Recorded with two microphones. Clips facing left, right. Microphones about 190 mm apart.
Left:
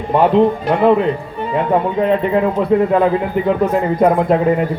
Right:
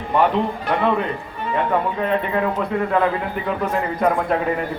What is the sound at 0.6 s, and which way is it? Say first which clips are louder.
A man's voice: left 7 dB; 30° left (ahead or behind).